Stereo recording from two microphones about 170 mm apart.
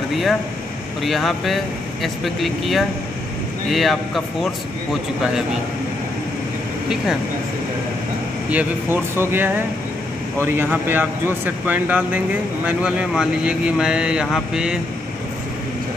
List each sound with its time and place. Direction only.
0.1 s speech: centre (ahead or behind)
8.5 s speech: 10° right (ahead or behind)